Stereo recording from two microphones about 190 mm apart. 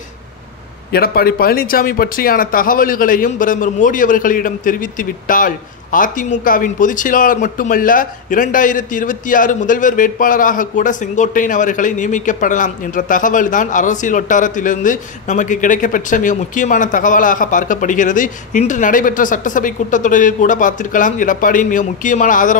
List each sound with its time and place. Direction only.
0.9 s speech: 50° left (ahead or behind)